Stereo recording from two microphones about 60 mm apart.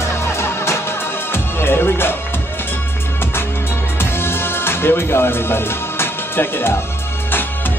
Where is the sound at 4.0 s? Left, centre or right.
Left.